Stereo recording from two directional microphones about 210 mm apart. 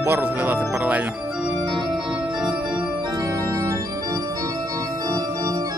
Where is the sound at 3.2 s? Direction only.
15° right (ahead or behind).